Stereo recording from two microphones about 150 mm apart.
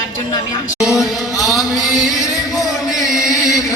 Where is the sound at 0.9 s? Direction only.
20° left (ahead or behind).